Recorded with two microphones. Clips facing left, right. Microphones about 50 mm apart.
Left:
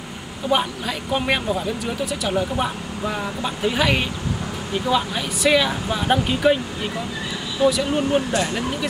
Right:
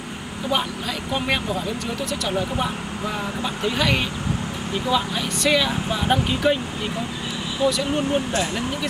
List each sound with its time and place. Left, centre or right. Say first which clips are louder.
0.5 s speech: left 3 dB; centre
7.6 s speech: left 3 dB; centre